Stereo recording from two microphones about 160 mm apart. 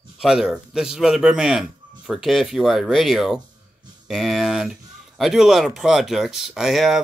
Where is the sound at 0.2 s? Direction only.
Centre (ahead or behind).